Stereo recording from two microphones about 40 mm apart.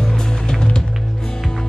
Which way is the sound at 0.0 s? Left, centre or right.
Centre.